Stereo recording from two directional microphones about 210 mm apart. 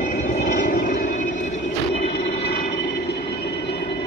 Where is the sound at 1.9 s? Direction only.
50° left (ahead or behind).